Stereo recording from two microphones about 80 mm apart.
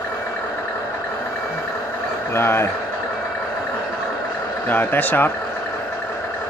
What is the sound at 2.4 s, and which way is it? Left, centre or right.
Speech, left.